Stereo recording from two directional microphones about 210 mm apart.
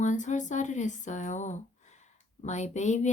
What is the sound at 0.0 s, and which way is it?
Speech, 35° left (ahead or behind).